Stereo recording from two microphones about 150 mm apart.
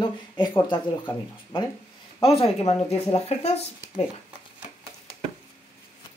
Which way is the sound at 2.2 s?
40° left (ahead or behind).